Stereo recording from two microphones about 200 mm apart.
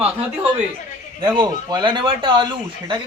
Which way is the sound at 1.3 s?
20° right (ahead or behind).